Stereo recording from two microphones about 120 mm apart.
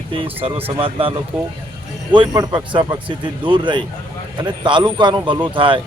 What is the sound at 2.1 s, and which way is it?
Speech, 35° right (ahead or behind).